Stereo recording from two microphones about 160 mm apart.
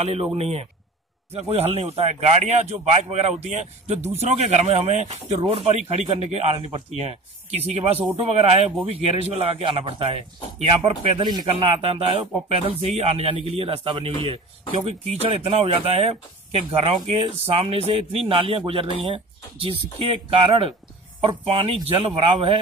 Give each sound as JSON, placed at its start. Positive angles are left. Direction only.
{"t": 0.0, "sound": "a man's voice", "side_deg": -40}